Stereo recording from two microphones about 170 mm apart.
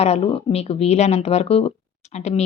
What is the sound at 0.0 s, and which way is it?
A woman's voice, 35° left (ahead or behind).